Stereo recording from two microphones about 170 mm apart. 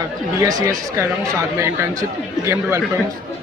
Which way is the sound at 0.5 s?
20° right (ahead or behind).